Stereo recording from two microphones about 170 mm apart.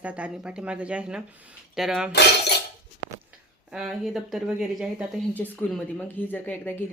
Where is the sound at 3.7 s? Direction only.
5° right (ahead or behind).